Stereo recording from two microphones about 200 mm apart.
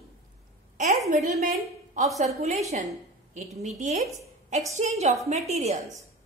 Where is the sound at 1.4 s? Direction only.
40° right (ahead or behind).